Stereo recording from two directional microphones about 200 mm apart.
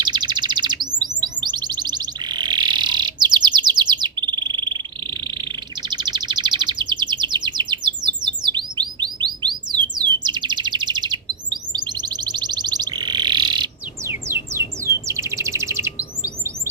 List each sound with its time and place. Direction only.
0.0 s bird: 20° right (ahead or behind)
1.0 s a sound: 20° right (ahead or behind)
14.8 s chirp: 15° right (ahead or behind)